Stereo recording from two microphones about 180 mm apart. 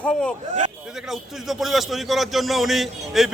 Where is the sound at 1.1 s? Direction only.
Centre (ahead or behind).